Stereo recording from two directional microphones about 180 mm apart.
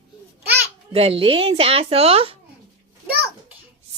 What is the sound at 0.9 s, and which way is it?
Speech, 30° right (ahead or behind).